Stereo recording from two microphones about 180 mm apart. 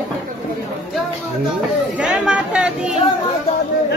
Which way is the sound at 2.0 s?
5° right (ahead or behind).